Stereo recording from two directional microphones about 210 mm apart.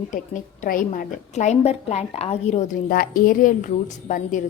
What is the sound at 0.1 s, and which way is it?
A woman's voice, 40° left (ahead or behind).